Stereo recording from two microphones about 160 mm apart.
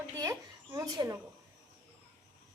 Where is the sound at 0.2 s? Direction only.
20° right (ahead or behind).